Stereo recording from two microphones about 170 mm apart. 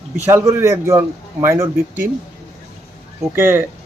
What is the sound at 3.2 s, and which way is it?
Speech, 15° right (ahead or behind).